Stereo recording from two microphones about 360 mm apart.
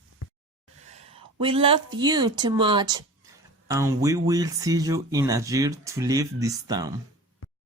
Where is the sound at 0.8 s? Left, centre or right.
Centre.